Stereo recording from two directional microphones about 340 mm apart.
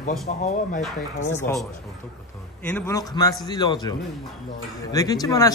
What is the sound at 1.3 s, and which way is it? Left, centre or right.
Speech, centre.